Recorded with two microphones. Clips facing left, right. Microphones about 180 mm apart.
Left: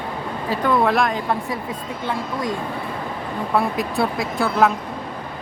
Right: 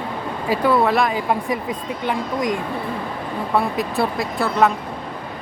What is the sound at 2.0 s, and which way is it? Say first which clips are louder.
Speech: right 3 dB; 15° right (ahead or behind).